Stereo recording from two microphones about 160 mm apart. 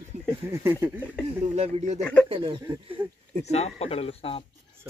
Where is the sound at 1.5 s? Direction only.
45° right (ahead or behind).